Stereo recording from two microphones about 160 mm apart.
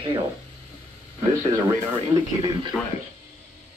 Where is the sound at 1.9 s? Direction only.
25° right (ahead or behind).